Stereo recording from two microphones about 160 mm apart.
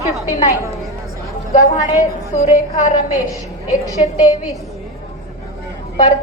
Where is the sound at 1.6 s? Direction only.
20° left (ahead or behind).